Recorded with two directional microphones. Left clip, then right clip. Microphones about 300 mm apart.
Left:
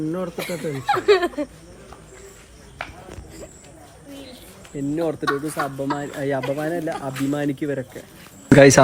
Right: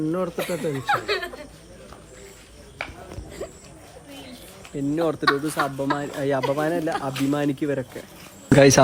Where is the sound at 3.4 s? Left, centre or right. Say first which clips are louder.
Right 8 dB; right.